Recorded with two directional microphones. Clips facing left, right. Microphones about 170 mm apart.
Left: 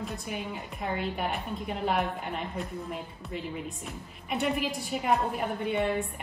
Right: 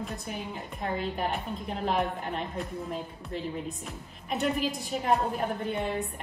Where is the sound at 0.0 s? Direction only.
Centre (ahead or behind).